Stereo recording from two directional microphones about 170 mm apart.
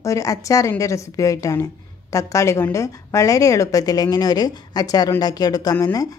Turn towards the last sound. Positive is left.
turn(degrees=20)  # may be behind; listen again after turning